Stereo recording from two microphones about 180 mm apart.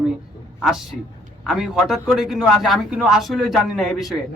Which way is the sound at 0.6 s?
Centre (ahead or behind).